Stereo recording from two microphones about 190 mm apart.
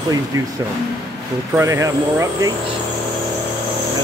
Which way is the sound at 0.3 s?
15° right (ahead or behind).